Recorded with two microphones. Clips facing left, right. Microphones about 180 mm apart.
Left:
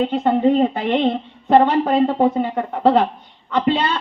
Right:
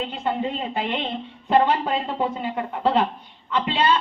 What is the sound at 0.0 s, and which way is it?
A woman's voice, 40° left (ahead or behind).